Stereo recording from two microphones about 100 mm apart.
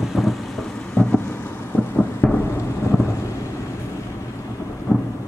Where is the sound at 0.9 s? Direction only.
20° left (ahead or behind).